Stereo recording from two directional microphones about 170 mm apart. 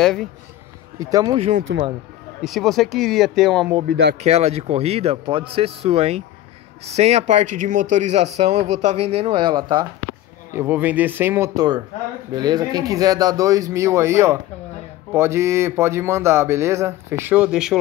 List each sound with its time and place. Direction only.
0.0 s speech: 5° left (ahead or behind)
0.9 s speech: 20° right (ahead or behind)
1.7 s speech: 90° right
2.4 s speech: centre (ahead or behind)
3.8 s speech: 65° right (ahead or behind)
4.2 s speech: 40° right (ahead or behind)
10.5 s speech: 10° right (ahead or behind)